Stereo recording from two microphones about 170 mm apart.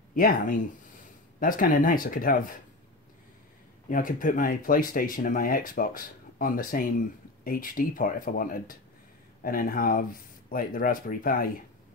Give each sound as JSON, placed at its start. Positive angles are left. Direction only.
{"t": 0.1, "sound": "speech", "side_deg": 55}
{"t": 3.9, "sound": "speech", "side_deg": 55}